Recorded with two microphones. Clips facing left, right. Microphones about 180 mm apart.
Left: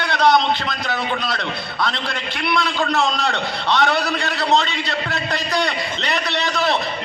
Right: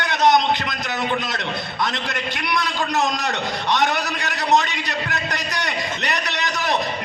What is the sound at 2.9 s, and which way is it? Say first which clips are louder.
A man's voice: left 2 dB; 20° right (ahead or behind).